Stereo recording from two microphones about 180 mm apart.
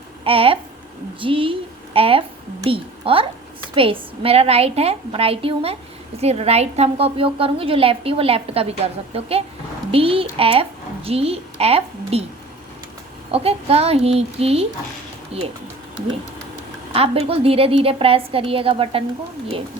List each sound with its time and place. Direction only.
0.3 s a woman's voice: 30° right (ahead or behind)
13.3 s a woman's voice: 35° right (ahead or behind)
16.9 s a woman's voice: 35° right (ahead or behind)